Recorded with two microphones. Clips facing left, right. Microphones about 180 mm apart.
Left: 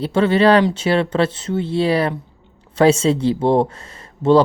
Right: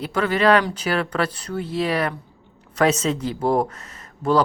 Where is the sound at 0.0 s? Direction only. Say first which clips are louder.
Left 5 dB; 25° left (ahead or behind).